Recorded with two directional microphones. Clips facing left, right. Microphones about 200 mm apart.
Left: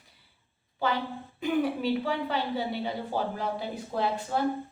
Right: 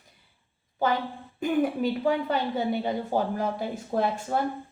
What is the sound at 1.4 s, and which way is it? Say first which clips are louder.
A woman's voice: right 3 dB; 45° right (ahead or behind).